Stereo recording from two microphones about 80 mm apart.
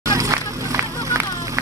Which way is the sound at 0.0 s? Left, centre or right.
Right.